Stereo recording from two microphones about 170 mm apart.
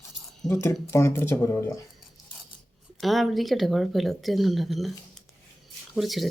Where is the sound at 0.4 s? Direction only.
15° left (ahead or behind).